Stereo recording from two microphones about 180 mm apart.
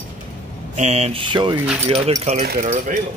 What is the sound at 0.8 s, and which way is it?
Speech, 35° right (ahead or behind).